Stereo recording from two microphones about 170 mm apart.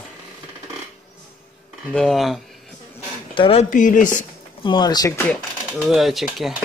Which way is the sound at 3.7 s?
50° left (ahead or behind).